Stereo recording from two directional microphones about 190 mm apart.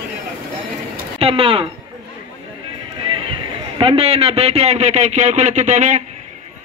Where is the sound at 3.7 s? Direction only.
30° right (ahead or behind).